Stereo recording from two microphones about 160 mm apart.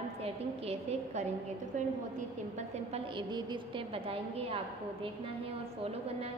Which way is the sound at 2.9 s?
30° right (ahead or behind).